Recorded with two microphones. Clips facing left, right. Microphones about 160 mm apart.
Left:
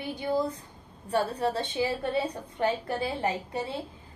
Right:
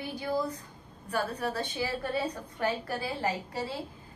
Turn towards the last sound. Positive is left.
turn(degrees=20)  # may be behind; listen again after turning